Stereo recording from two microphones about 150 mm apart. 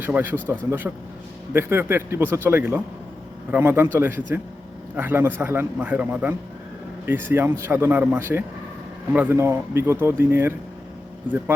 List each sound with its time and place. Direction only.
0.0 s speech: 15° right (ahead or behind)